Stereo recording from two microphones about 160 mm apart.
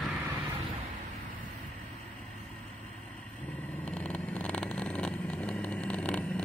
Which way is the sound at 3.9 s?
10° left (ahead or behind).